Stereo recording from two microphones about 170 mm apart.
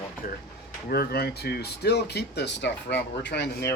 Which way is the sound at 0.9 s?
65° left (ahead or behind).